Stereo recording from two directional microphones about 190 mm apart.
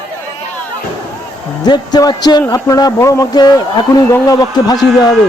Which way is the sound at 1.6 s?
20° left (ahead or behind).